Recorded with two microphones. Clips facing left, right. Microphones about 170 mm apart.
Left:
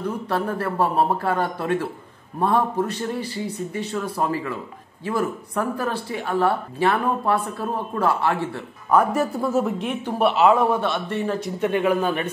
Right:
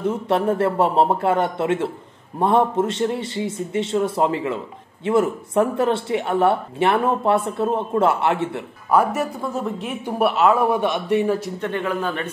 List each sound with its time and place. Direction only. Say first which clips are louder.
0.0 s speech: right 5 dB; 25° right (ahead or behind)
8.9 s speech: even; centre (ahead or behind)
10.6 s a man's voice: right 2 dB; 15° right (ahead or behind)
11.6 s a man's voice: left 8 dB; 10° left (ahead or behind)